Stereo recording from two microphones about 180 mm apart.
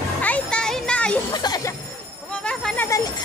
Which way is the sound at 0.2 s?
5° left (ahead or behind).